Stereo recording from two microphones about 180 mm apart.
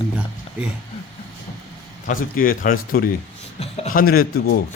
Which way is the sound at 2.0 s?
50° left (ahead or behind).